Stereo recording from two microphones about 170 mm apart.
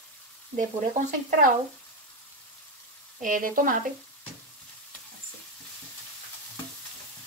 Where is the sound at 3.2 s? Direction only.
55° right (ahead or behind).